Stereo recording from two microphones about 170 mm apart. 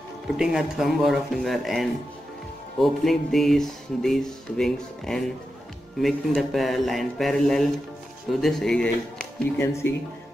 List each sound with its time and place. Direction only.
0.4 s speech: 5° right (ahead or behind)
9.6 s speech: 15° left (ahead or behind)